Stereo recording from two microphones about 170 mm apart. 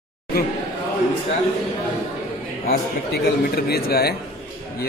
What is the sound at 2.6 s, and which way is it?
A man's voice, 65° left (ahead or behind).